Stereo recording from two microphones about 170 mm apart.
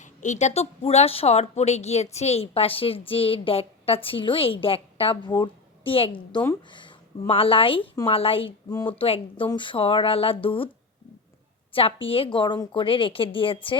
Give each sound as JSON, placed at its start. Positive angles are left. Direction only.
{"t": 0.0, "sound": "a woman's voice", "side_deg": 45}
{"t": 11.7, "sound": "a woman's voice", "side_deg": 35}